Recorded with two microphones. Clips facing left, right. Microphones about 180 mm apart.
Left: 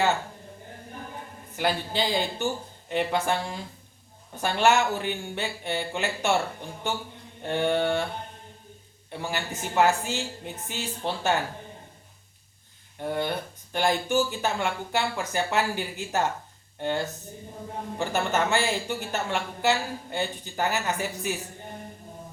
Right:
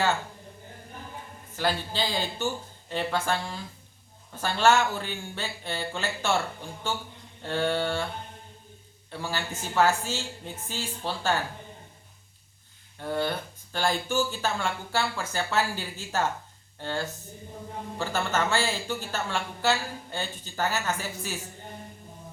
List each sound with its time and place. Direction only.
1.5 s a woman's voice: 15° left (ahead or behind)
7.4 s a woman's voice: 15° left (ahead or behind)
9.0 s a woman's voice: 15° left (ahead or behind)
13.0 s a woman's voice: 15° left (ahead or behind)